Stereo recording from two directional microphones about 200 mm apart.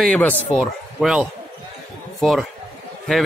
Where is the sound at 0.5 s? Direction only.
5° right (ahead or behind).